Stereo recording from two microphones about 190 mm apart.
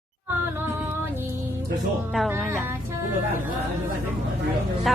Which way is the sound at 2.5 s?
15° right (ahead or behind).